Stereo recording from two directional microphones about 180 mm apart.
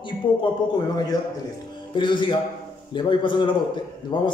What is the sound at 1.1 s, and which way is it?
A man's voice, 20° left (ahead or behind).